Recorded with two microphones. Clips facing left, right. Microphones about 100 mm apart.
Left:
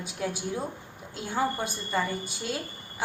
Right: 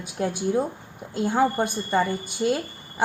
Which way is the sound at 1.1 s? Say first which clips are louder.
Right 7 dB; 60° right (ahead or behind).